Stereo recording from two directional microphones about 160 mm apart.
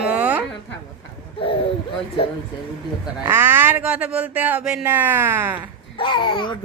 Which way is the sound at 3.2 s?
15° right (ahead or behind).